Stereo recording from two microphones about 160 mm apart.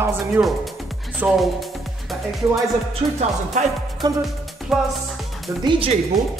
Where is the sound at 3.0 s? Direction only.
45° right (ahead or behind).